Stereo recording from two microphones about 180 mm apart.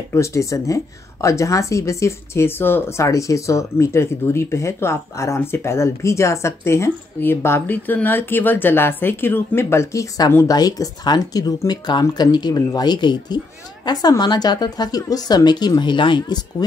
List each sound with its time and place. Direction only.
0.1 s a woman's voice: 15° left (ahead or behind)